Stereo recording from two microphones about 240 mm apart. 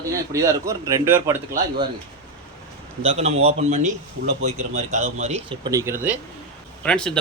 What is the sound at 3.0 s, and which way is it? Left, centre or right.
Speech, right.